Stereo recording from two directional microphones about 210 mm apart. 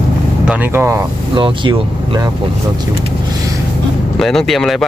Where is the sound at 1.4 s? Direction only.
25° right (ahead or behind).